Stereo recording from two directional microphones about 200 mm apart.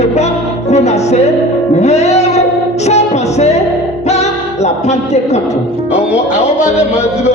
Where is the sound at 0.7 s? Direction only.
35° left (ahead or behind).